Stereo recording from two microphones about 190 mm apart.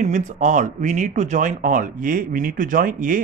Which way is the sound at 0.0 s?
40° right (ahead or behind).